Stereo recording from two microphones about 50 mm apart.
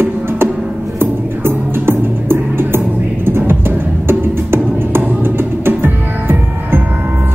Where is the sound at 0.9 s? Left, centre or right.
Right.